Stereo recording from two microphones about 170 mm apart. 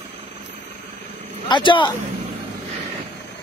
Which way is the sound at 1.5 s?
30° left (ahead or behind).